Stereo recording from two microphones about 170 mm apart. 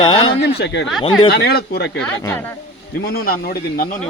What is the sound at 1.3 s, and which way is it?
Speech, 70° left (ahead or behind).